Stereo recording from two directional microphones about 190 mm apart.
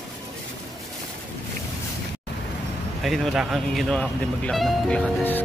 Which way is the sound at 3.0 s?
Centre (ahead or behind).